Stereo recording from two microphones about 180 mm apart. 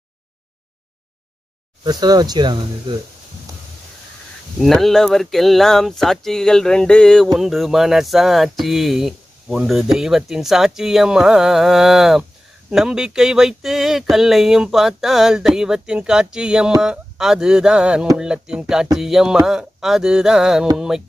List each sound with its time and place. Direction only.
1.9 s speech: 20° right (ahead or behind)
4.6 s speech: centre (ahead or behind)